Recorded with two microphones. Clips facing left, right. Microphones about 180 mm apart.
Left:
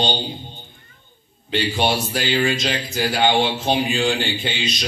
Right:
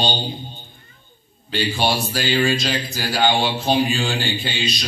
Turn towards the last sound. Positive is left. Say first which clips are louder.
# even
turn(degrees=20)  # may be behind; listen again after turning